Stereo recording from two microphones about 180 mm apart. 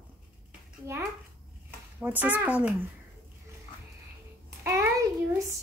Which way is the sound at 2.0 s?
10° right (ahead or behind).